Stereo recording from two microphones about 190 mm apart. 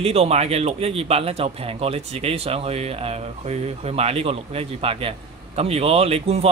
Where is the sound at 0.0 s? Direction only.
35° right (ahead or behind).